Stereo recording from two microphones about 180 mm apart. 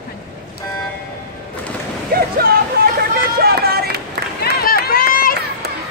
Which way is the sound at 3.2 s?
60° right (ahead or behind).